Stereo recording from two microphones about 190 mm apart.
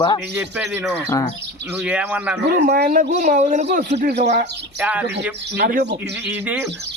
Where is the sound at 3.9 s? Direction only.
60° right (ahead or behind).